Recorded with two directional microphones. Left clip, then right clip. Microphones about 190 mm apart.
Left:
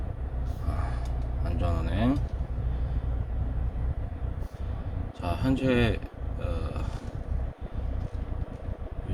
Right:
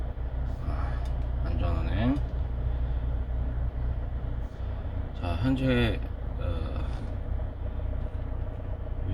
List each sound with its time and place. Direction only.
1.5 s vehicle: 20° left (ahead or behind)
5.2 s speech: 25° left (ahead or behind)